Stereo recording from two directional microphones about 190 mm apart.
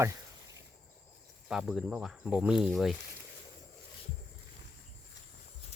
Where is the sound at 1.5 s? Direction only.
Centre (ahead or behind).